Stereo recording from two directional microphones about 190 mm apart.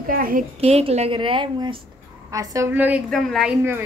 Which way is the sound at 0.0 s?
45° right (ahead or behind).